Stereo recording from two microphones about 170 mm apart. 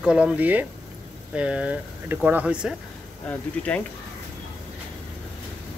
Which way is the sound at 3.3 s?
10° left (ahead or behind).